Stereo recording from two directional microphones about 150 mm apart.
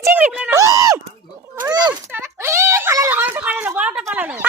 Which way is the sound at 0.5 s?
20° right (ahead or behind).